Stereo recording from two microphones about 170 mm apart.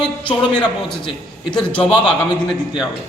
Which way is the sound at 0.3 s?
5° left (ahead or behind).